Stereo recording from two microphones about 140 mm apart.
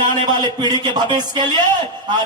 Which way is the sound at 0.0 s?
30° right (ahead or behind).